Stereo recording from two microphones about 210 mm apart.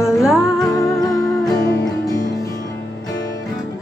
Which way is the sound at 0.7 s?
15° left (ahead or behind).